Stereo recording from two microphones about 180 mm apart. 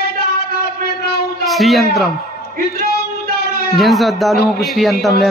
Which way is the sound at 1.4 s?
Centre (ahead or behind).